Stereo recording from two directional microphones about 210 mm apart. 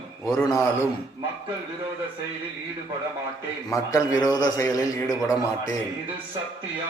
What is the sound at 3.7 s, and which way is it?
A man's voice, 15° left (ahead or behind).